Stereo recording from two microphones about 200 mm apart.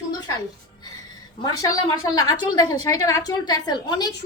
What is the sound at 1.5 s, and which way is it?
A woman's voice, 20° left (ahead or behind).